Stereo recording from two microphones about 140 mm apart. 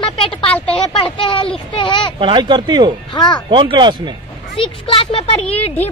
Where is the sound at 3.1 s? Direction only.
30° left (ahead or behind).